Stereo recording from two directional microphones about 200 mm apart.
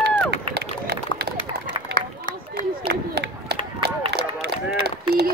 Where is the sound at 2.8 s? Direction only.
55° right (ahead or behind).